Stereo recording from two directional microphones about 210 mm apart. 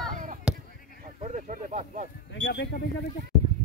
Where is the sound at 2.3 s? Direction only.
55° left (ahead or behind).